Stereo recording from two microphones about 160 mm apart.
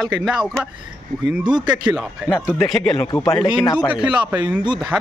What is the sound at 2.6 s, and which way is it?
Speech, 5° left (ahead or behind).